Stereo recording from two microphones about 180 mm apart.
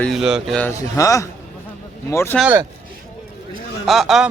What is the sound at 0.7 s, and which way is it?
Speech, 15° left (ahead or behind).